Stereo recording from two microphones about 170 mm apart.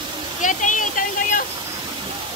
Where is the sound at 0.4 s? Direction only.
50° left (ahead or behind).